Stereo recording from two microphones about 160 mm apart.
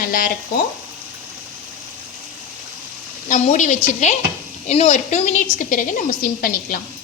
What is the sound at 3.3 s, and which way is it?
A woman's voice, 50° left (ahead or behind).